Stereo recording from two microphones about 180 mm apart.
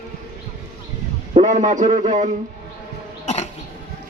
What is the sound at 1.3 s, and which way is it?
Speech, 40° right (ahead or behind).